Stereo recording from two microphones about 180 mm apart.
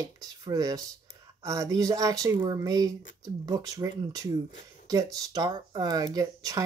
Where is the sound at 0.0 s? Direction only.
20° right (ahead or behind).